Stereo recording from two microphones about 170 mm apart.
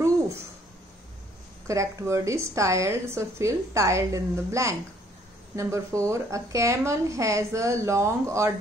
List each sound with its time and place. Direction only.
1.7 s a woman's voice: 20° right (ahead or behind)